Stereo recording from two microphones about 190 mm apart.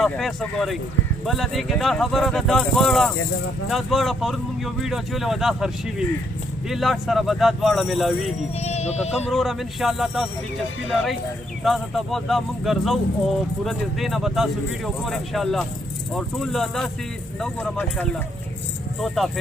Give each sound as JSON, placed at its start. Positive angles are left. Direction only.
{"t": 0.0, "sound": "speech", "side_deg": 0}
{"t": 8.5, "sound": "speech", "side_deg": 35}
{"t": 9.3, "sound": "speech", "side_deg": 0}
{"t": 11.6, "sound": "speech", "side_deg": 0}